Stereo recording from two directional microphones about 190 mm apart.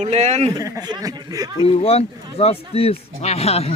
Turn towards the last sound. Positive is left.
turn(degrees=30)  # may be behind; listen again after turning